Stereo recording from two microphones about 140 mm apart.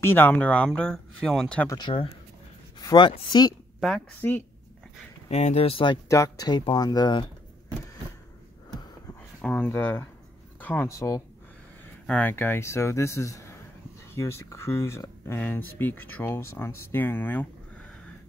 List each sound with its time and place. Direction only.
0.0 s speech: 15° left (ahead or behind)
1.7 s speech: 35° left (ahead or behind)
3.8 s speech: 5° left (ahead or behind)
5.3 s speech: 50° left (ahead or behind)
6.0 s speech: 20° left (ahead or behind)
9.4 s speech: 10° left (ahead or behind)
12.1 s speech: 10° left (ahead or behind)